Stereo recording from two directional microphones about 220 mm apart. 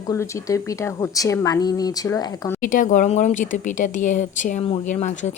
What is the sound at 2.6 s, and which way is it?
Speech, 35° left (ahead or behind).